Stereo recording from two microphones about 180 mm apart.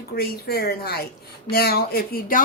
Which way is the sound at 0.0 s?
55° left (ahead or behind).